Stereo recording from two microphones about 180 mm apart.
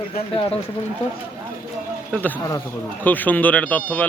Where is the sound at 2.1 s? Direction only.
10° left (ahead or behind).